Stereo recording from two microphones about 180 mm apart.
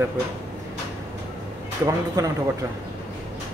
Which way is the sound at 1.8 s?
20° right (ahead or behind).